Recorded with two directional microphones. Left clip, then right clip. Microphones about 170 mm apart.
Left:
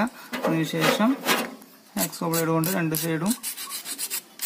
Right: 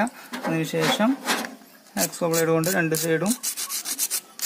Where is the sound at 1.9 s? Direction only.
15° right (ahead or behind).